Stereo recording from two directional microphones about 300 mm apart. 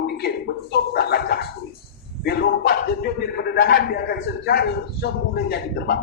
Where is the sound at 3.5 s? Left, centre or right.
Left.